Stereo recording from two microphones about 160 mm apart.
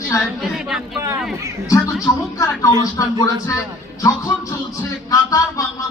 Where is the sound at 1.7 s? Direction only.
15° left (ahead or behind).